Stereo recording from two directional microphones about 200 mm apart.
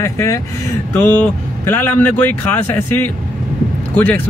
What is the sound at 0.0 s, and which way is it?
Speech, 15° left (ahead or behind).